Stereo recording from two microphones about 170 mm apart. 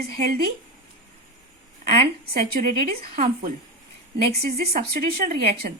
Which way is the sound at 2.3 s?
60° right (ahead or behind).